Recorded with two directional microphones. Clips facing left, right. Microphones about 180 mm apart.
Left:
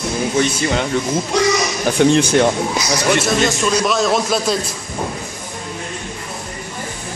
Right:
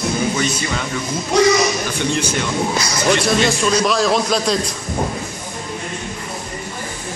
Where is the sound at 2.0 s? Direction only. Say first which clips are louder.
Left 10 dB; 90° left.